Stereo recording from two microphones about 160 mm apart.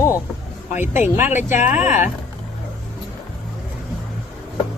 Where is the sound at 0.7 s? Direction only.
50° left (ahead or behind).